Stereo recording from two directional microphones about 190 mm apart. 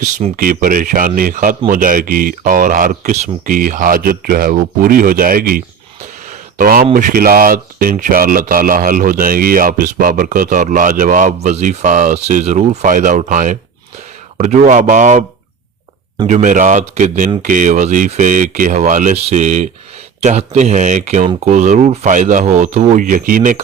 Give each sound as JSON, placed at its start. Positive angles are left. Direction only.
{"t": 0.0, "sound": "speech", "side_deg": -45}
{"t": 16.2, "sound": "speech", "side_deg": -40}